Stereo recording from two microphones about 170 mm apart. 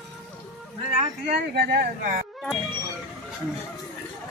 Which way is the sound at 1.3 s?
65° right (ahead or behind).